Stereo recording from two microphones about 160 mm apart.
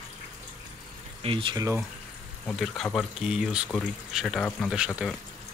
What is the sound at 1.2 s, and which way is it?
Speech, 30° right (ahead or behind).